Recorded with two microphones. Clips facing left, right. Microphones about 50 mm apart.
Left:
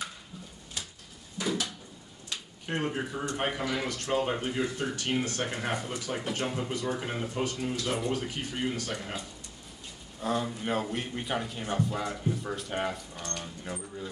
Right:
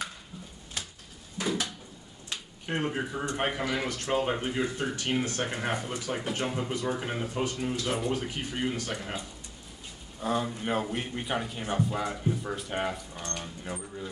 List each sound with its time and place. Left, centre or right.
0.8 s typewriter: right
1.4 s a sound: right
2.6 s speech: centre
10.2 s speech: centre